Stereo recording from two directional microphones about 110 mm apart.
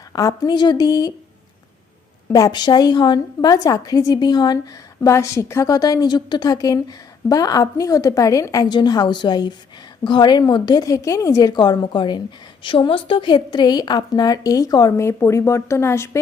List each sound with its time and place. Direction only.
0.1 s a woman's voice: 35° left (ahead or behind)
2.3 s a woman's voice: 35° left (ahead or behind)
3.5 s a woman's voice: 35° left (ahead or behind)
4.9 s a woman's voice: 25° left (ahead or behind)